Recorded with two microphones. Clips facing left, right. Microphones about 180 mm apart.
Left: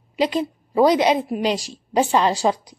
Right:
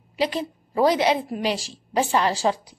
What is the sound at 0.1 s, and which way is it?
A woman's voice, 15° left (ahead or behind).